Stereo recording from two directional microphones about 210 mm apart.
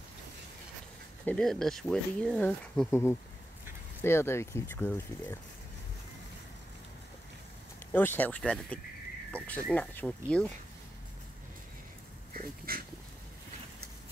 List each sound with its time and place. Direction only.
1.2 s speech: 5° left (ahead or behind)
7.9 s speech: 10° left (ahead or behind)
12.4 s dog: 45° right (ahead or behind)